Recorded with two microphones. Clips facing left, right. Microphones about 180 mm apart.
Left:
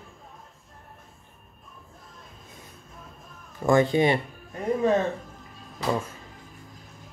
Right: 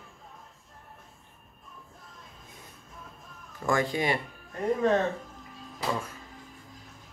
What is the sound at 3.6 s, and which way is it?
Speech, 25° left (ahead or behind).